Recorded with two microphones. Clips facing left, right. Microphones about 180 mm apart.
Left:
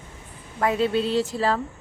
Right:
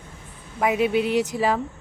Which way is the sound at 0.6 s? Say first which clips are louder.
Right 1 dB; 15° right (ahead or behind).